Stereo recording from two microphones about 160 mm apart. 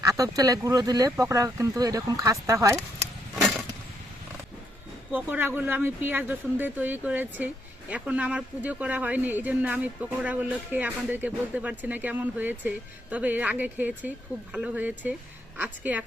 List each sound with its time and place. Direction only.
0.0 s speech: 20° right (ahead or behind)
5.1 s speech: 10° right (ahead or behind)